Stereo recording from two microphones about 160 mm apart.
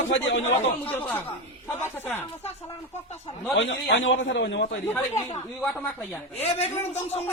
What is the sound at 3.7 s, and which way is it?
Speech, 90° left.